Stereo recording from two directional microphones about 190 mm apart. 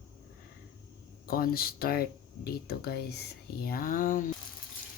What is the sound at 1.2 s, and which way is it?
Speech, 50° left (ahead or behind).